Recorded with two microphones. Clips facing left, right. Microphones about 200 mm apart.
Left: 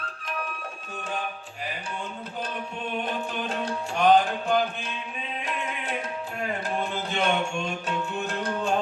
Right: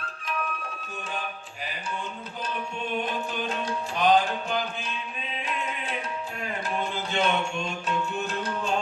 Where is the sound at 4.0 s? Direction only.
55° left (ahead or behind).